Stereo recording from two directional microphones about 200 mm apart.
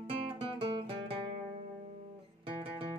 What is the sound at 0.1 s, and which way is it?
Guitar, 25° right (ahead or behind).